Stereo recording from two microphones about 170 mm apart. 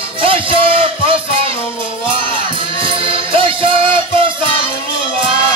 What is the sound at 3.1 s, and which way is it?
Music, 30° right (ahead or behind).